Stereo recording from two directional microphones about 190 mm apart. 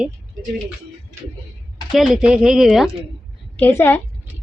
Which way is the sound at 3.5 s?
10° left (ahead or behind).